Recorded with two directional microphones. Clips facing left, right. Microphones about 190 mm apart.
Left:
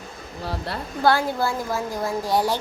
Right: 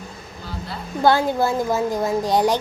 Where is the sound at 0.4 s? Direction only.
70° left (ahead or behind).